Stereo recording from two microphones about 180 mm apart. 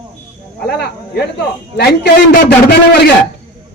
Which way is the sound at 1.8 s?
60° left (ahead or behind).